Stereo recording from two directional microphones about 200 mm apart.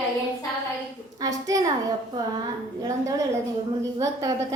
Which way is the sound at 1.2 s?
15° right (ahead or behind).